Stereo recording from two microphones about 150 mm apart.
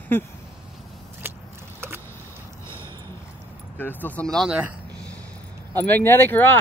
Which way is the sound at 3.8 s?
10° left (ahead or behind).